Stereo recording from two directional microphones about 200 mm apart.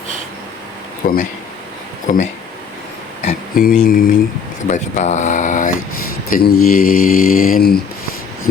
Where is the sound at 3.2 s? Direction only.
40° left (ahead or behind).